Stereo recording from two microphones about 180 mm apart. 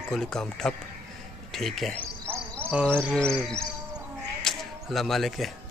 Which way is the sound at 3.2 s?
5° left (ahead or behind).